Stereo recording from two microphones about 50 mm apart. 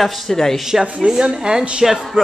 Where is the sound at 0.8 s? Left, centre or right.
Right.